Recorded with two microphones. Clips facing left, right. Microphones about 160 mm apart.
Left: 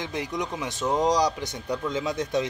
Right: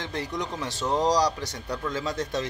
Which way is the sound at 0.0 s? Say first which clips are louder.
Left 1 dB; 15° left (ahead or behind).